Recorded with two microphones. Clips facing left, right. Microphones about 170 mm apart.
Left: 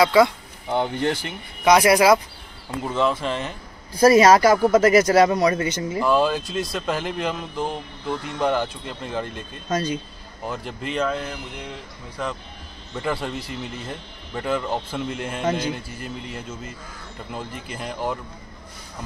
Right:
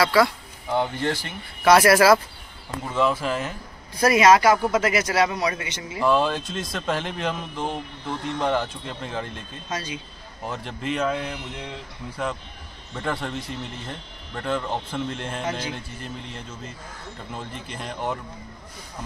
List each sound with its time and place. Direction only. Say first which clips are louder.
0.0 s speech: left 3 dB; 20° left (ahead or behind)
2.9 s speech: even; 5° right (ahead or behind)
4.0 s speech: left 3 dB; 35° left (ahead or behind)
5.9 s speech: left 1 dB; centre (ahead or behind)
9.7 s speech: left 8 dB; 45° left (ahead or behind)
10.4 s speech: left 1 dB; centre (ahead or behind)